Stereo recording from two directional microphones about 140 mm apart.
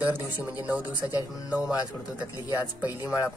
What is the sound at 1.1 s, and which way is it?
Speech, 25° left (ahead or behind).